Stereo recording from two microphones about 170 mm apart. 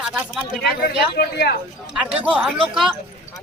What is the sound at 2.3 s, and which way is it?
Speech, centre (ahead or behind).